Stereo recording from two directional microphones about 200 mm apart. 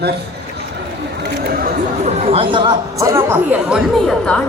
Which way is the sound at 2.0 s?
30° right (ahead or behind).